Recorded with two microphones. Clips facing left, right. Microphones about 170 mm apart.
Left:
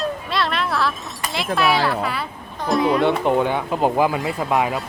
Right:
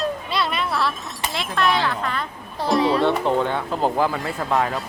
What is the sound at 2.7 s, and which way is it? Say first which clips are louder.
Speech: left 1 dB; 30° right (ahead or behind).